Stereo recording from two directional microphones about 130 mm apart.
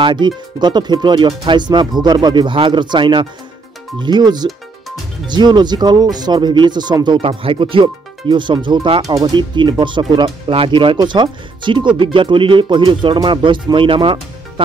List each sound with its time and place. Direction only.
0.0 s speech: 35° right (ahead or behind)
9.0 s speech: 30° right (ahead or behind)